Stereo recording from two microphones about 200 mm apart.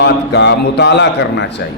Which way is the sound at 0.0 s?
60° left (ahead or behind).